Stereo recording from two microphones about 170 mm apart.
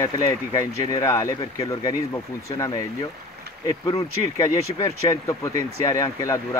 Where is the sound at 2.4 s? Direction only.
20° left (ahead or behind).